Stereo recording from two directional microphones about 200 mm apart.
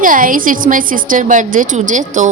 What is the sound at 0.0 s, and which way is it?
A woman's voice, 45° right (ahead or behind).